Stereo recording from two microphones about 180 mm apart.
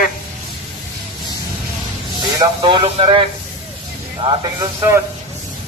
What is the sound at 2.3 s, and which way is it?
Speech, 25° right (ahead or behind).